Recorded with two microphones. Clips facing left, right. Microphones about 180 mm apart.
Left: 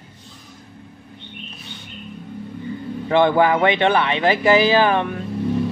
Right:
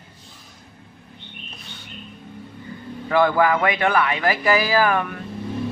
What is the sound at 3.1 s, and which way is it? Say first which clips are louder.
A man's voice: left 2 dB; 25° left (ahead or behind).